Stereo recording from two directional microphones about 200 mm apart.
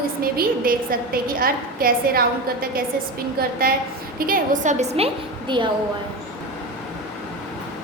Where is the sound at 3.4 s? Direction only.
50° right (ahead or behind); by 5.7 s 25° right (ahead or behind).